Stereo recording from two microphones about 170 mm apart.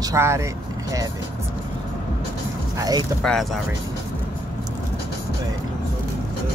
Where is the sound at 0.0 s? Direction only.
15° right (ahead or behind).